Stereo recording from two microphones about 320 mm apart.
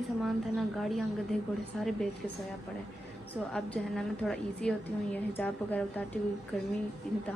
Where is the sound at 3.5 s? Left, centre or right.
Centre.